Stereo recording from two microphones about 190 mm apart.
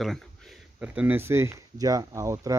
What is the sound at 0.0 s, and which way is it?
Speech, centre (ahead or behind).